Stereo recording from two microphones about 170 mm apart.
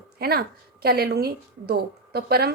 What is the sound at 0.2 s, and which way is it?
A woman's voice, 65° right (ahead or behind).